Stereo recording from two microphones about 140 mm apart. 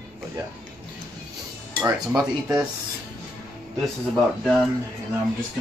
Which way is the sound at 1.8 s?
5° right (ahead or behind).